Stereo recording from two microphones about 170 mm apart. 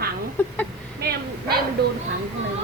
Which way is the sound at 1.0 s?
70° right (ahead or behind).